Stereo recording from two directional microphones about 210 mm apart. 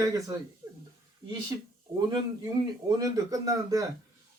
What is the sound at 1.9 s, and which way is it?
Speech, 20° right (ahead or behind).